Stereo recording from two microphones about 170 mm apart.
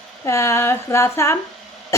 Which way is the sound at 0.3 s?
15° left (ahead or behind).